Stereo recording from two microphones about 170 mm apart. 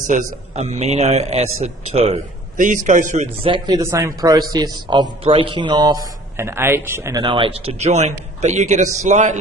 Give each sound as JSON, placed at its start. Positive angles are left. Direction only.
{"t": 0.0, "sound": "a man's voice", "side_deg": -50}
{"t": 3.4, "sound": "a man's voice", "side_deg": -25}
{"t": 6.3, "sound": "a man's voice", "side_deg": -15}
{"t": 7.2, "sound": "a man's voice", "side_deg": -30}